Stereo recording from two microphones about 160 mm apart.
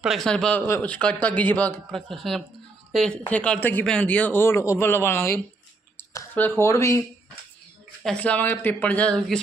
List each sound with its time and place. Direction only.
0.0 s speech: centre (ahead or behind); by 7.0 s 20° left (ahead or behind)
8.0 s speech: 5° left (ahead or behind)